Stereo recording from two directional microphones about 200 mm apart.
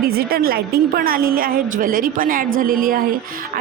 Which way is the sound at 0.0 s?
50° right (ahead or behind).